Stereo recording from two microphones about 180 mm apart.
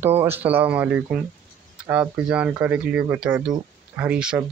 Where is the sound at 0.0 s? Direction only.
10° right (ahead or behind).